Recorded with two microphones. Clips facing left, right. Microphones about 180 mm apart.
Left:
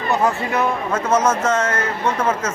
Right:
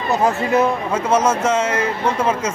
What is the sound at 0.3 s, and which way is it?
Speech, 20° right (ahead or behind).